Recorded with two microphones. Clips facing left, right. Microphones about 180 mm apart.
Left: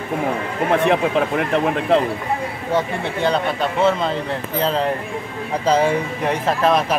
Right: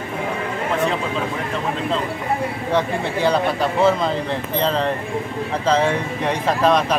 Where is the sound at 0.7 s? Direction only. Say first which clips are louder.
Left 5 dB; 65° left (ahead or behind).